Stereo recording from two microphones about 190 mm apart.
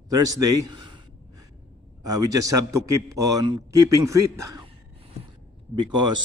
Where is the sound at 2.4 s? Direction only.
15° right (ahead or behind).